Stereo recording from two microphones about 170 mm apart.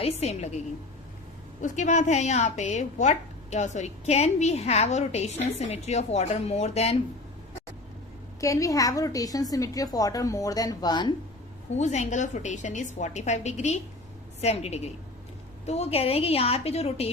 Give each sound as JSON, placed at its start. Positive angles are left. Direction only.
{"t": 0.0, "sound": "a woman's voice", "side_deg": 40}
{"t": 1.6, "sound": "a woman's voice", "side_deg": 45}
{"t": 8.4, "sound": "a woman's voice", "side_deg": 20}
{"t": 11.8, "sound": "a woman's voice", "side_deg": 45}